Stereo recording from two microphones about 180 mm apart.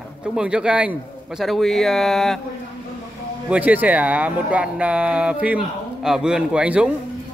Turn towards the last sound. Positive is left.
turn(degrees=-5)  # may be behind; listen again after turning